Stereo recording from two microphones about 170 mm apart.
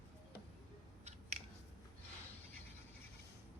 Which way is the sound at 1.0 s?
40° right (ahead or behind).